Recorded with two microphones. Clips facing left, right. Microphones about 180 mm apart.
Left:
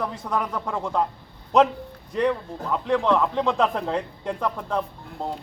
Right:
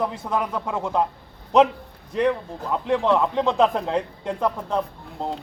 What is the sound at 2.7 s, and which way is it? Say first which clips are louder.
Speech: right 1 dB; 10° right (ahead or behind).